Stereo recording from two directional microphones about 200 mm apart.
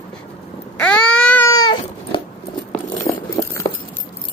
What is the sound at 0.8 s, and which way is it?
Baby cry, 5° left (ahead or behind).